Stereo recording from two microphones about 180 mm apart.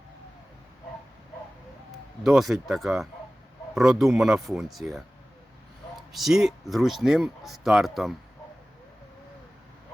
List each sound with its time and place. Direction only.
2.2 s speech: centre (ahead or behind)
6.1 s speech: centre (ahead or behind)